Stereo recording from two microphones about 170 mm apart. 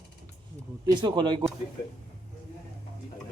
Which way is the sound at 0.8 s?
25° right (ahead or behind).